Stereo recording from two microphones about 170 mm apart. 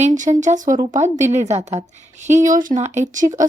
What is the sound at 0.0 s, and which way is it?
A woman's voice, 45° right (ahead or behind).